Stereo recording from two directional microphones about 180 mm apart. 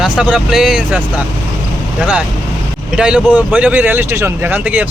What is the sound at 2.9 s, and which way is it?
Speech, 5° right (ahead or behind).